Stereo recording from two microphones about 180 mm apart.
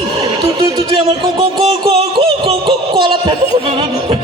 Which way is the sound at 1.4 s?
35° right (ahead or behind).